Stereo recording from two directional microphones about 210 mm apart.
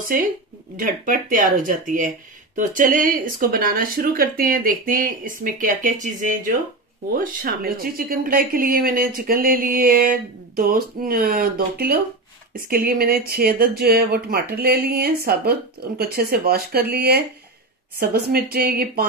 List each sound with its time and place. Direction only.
0.7 s speech: 40° right (ahead or behind)
7.2 s speech: 45° right (ahead or behind)